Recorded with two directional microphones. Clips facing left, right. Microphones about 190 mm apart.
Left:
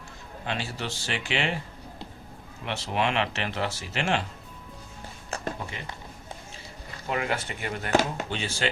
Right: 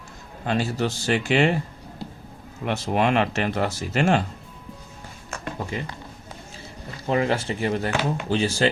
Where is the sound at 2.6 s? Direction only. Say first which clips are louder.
Right 6 dB; 45° right (ahead or behind).